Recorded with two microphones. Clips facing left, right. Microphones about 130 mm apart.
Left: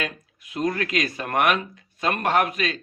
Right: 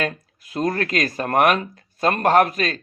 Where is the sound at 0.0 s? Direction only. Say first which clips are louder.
Right 5 dB; 40° right (ahead or behind).